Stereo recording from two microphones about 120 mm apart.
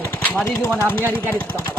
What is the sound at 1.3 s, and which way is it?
Speech, 20° left (ahead or behind).